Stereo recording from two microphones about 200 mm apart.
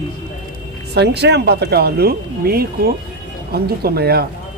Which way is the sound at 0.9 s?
55° right (ahead or behind).